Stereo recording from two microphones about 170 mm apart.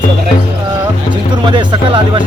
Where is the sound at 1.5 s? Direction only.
30° right (ahead or behind).